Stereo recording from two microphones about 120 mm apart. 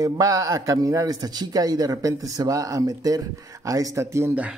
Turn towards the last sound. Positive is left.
turn(degrees=-25)  # may be behind; listen again after turning